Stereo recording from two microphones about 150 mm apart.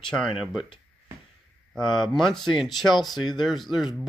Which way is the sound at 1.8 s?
5° left (ahead or behind).